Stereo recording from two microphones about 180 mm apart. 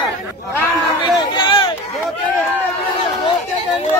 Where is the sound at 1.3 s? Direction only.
25° left (ahead or behind).